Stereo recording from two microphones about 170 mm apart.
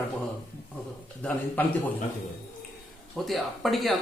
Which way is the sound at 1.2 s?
10° left (ahead or behind).